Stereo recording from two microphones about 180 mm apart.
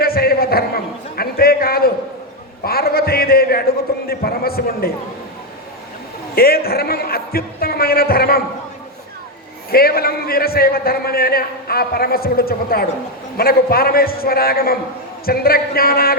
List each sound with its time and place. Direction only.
0.0 s a sound: 55° left (ahead or behind)
2.6 s a man's voice: 60° left (ahead or behind)
6.3 s a man's voice: 55° left (ahead or behind)
9.7 s a man's voice: 55° left (ahead or behind)